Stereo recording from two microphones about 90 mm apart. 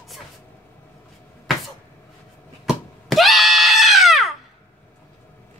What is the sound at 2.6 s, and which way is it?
Screaming, centre (ahead or behind).